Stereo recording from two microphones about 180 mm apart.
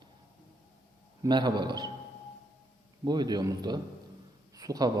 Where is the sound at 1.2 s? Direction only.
25° right (ahead or behind).